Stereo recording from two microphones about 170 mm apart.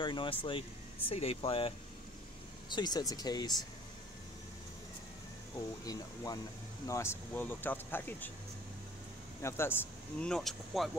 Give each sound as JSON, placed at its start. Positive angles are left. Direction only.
{"t": 0.0, "sound": "speech", "side_deg": 30}
{"t": 2.7, "sound": "speech", "side_deg": 25}
{"t": 5.9, "sound": "speech", "side_deg": 20}
{"t": 9.4, "sound": "speech", "side_deg": 15}
{"t": 10.2, "sound": "speech", "side_deg": 5}